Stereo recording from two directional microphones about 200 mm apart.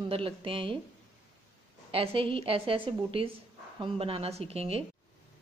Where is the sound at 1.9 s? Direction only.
25° right (ahead or behind).